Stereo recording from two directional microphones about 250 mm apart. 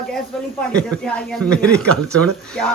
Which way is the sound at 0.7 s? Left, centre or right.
Centre.